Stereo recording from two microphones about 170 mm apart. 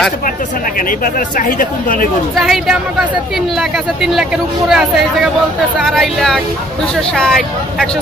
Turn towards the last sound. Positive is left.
turn(degrees=0)  # may be behind; listen again after turning